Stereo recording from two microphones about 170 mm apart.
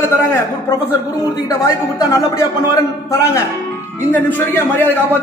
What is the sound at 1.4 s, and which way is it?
A man's voice, 20° left (ahead or behind).